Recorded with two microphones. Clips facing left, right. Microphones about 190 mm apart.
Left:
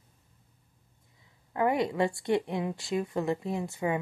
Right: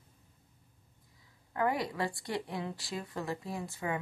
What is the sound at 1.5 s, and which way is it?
A woman's voice, 20° left (ahead or behind).